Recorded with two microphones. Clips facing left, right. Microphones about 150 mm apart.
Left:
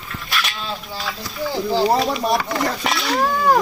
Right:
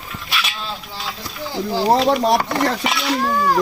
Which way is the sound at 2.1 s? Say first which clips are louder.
Right 4 dB; 70° right (ahead or behind).